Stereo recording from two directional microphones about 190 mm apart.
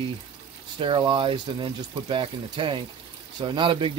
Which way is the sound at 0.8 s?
25° right (ahead or behind).